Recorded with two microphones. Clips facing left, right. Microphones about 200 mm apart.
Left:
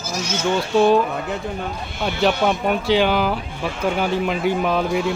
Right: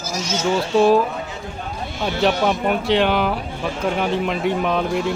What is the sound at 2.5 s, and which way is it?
Speech, centre (ahead or behind).